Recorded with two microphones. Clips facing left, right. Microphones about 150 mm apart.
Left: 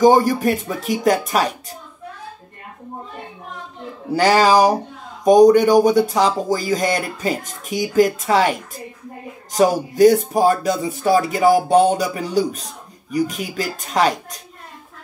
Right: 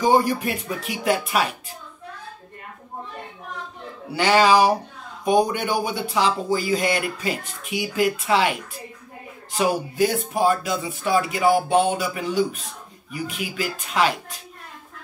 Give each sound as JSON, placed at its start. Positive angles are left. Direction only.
{"t": 0.0, "sound": "speech", "side_deg": 40}
{"t": 4.1, "sound": "speech", "side_deg": 40}